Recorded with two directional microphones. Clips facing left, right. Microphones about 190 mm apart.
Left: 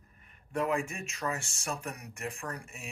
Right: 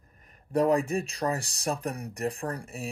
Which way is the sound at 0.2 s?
40° right (ahead or behind).